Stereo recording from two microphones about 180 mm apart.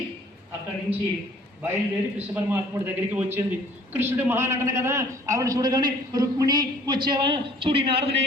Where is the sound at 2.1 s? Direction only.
10° right (ahead or behind); by 8.1 s 30° right (ahead or behind).